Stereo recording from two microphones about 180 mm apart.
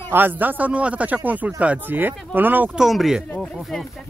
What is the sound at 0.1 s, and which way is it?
Speech, 10° right (ahead or behind).